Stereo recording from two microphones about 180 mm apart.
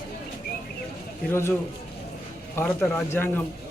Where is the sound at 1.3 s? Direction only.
15° left (ahead or behind).